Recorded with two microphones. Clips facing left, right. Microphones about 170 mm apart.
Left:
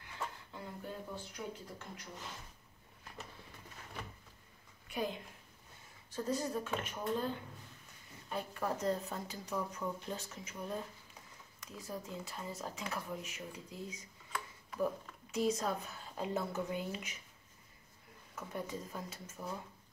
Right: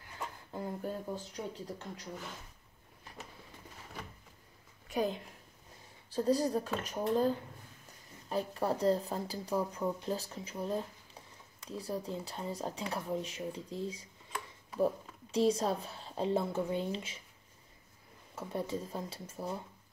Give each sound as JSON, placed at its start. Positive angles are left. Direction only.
{"t": 0.5, "sound": "speech", "side_deg": -40}
{"t": 4.8, "sound": "a sound", "side_deg": -40}
{"t": 6.0, "sound": "speech", "side_deg": -35}
{"t": 15.3, "sound": "speech", "side_deg": -30}
{"t": 18.3, "sound": "speech", "side_deg": -30}